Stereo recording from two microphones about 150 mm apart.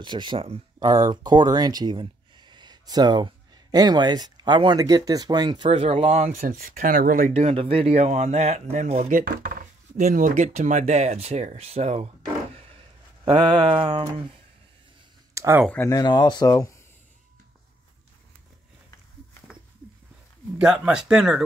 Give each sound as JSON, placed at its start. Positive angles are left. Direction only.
{"t": 0.0, "sound": "speech", "side_deg": -30}
{"t": 6.4, "sound": "speech", "side_deg": -75}
{"t": 7.3, "sound": "speech", "side_deg": -40}
{"t": 9.2, "sound": "speech", "side_deg": -70}
{"t": 13.3, "sound": "a sound", "side_deg": -30}
{"t": 15.3, "sound": "a sound", "side_deg": -20}
{"t": 15.7, "sound": "speech", "side_deg": 20}
{"t": 20.5, "sound": "speech", "side_deg": -5}